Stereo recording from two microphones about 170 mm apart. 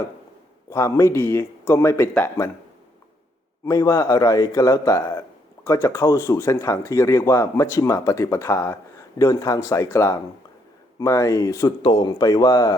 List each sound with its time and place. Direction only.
0.7 s speech: 15° left (ahead or behind)
3.7 s a man's voice: 20° left (ahead or behind)